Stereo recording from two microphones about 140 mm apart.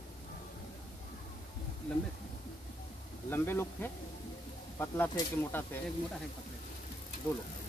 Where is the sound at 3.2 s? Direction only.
15° left (ahead or behind).